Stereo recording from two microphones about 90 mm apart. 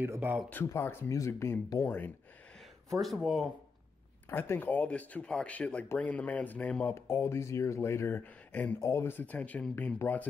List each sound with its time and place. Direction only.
0.0 s speech: 25° right (ahead or behind)
0.5 s speech: 25° left (ahead or behind)
1.9 s speech: 25° left (ahead or behind)
2.9 s speech: centre (ahead or behind)
4.3 s speech: 25° left (ahead or behind)
7.1 s speech: 30° left (ahead or behind)
8.2 s speech: 15° left (ahead or behind)
8.8 s speech: 30° left (ahead or behind)